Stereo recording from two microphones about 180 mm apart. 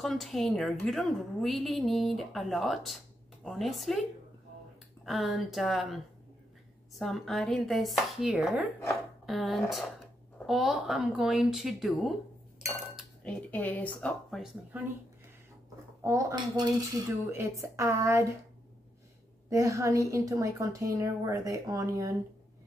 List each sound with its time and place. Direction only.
0.0 s a woman's voice: centre (ahead or behind)
5.0 s a woman's voice: centre (ahead or behind)
7.0 s a woman's voice: centre (ahead or behind)
16.0 s speech: 15° right (ahead or behind)
19.5 s speech: 15° right (ahead or behind)